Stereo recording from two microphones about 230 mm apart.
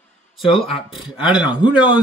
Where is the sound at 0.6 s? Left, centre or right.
Centre.